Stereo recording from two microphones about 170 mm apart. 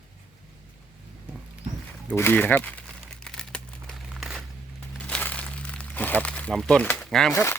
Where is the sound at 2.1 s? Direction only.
10° left (ahead or behind).